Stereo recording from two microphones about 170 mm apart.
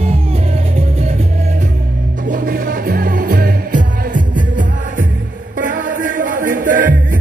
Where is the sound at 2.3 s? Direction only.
55° right (ahead or behind).